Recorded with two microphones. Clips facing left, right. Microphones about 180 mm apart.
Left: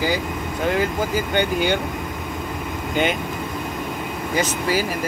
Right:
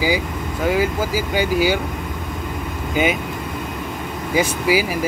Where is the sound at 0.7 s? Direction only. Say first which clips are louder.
Right 2 dB; 5° right (ahead or behind).